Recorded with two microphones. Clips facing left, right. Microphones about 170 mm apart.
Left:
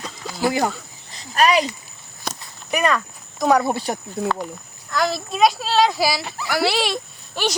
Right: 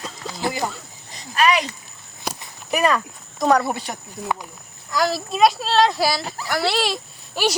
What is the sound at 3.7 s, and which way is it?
Speech, 35° left (ahead or behind).